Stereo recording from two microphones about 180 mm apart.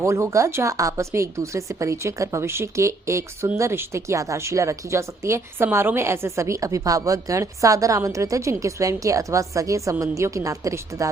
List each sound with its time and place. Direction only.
0.0 s a woman's voice: 15° right (ahead or behind)